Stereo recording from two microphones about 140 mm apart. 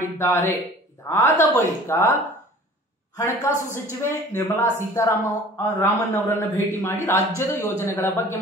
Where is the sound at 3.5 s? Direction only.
15° right (ahead or behind).